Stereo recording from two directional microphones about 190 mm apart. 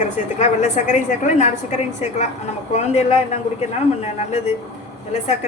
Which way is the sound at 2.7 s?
35° left (ahead or behind).